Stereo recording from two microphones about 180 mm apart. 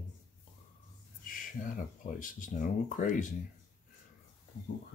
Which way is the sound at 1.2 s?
50° left (ahead or behind).